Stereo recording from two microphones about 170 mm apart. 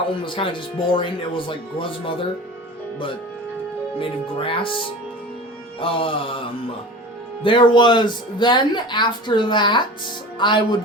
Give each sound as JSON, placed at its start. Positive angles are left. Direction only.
{"t": 0.1, "sound": "speech", "side_deg": 30}
{"t": 4.0, "sound": "speech", "side_deg": 30}